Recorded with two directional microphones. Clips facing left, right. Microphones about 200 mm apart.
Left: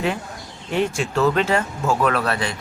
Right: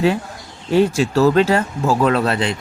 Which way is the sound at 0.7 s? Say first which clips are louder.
Right 7 dB; 35° right (ahead or behind).